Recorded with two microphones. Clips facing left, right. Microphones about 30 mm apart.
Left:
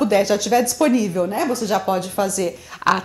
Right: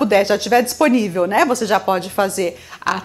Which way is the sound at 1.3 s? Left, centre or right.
Right.